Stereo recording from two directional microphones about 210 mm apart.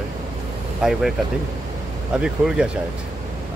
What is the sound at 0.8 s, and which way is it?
Speech, centre (ahead or behind).